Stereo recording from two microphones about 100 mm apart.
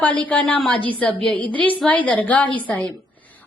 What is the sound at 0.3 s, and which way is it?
A woman's voice, 15° left (ahead or behind).